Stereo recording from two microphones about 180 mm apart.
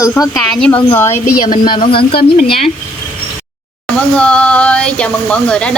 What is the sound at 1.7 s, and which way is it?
Speech, 30° left (ahead or behind).